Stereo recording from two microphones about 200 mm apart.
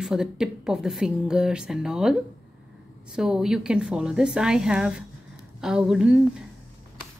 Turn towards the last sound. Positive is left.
turn(degrees=-5)  # may be behind; listen again after turning